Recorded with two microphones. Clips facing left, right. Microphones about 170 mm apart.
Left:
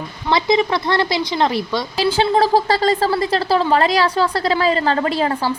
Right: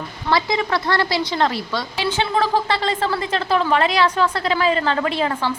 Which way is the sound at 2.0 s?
35° left (ahead or behind).